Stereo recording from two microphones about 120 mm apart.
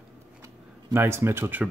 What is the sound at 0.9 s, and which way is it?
Speech, 20° right (ahead or behind).